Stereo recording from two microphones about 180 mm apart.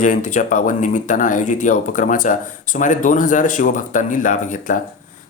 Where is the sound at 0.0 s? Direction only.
45° left (ahead or behind).